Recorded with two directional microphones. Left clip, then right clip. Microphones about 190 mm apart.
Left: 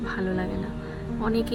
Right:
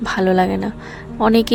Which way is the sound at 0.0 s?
55° right (ahead or behind).